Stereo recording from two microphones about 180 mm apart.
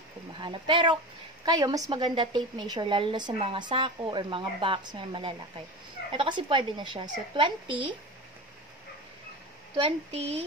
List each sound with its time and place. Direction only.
0.4 s a woman's voice: 25° right (ahead or behind)
9.8 s a woman's voice: 35° right (ahead or behind)